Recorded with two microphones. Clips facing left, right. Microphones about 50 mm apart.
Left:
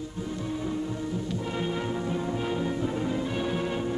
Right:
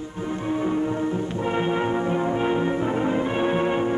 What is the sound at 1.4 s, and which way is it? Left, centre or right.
Music, right.